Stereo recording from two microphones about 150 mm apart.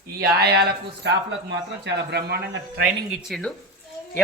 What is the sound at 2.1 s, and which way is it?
Speech, 90° right.